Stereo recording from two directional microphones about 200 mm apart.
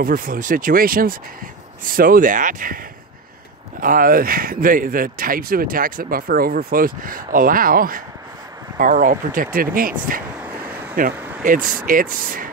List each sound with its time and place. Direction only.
0.0 s speech: 45° right (ahead or behind)
3.8 s speech: 45° right (ahead or behind)
10.4 s a sound: 10° right (ahead or behind)
11.4 s speech: 40° right (ahead or behind)